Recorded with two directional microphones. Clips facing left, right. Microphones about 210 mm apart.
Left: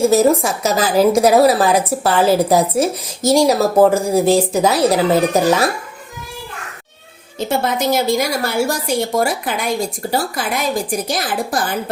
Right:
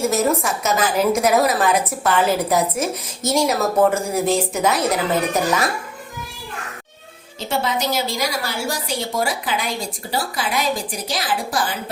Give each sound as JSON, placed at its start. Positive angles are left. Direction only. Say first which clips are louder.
{"t": 0.0, "sound": "a woman's voice", "louder": "left 6 dB", "side_deg": 30}
{"t": 7.3, "sound": "a woman's voice", "louder": "left 4 dB", "side_deg": 55}